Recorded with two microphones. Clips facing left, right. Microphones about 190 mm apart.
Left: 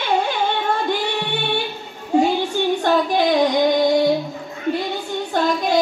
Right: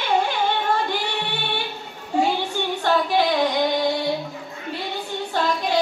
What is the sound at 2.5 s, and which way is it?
Female singing, 50° left (ahead or behind).